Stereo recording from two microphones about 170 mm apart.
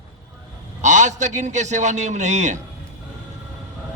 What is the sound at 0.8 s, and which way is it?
A man's voice, 45° right (ahead or behind).